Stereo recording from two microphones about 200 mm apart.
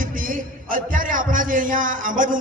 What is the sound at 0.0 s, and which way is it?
A man's voice, 45° right (ahead or behind).